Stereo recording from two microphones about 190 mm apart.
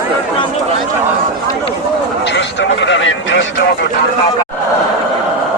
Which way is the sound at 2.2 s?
70° left (ahead or behind).